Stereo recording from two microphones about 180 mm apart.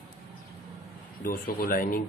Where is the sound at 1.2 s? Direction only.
50° left (ahead or behind).